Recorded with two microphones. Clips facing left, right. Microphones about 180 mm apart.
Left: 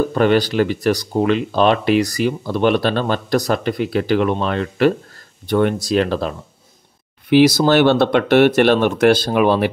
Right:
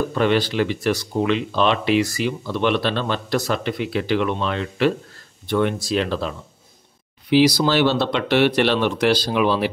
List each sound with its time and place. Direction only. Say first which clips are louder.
0.1 s speech: left 4 dB; 45° left (ahead or behind)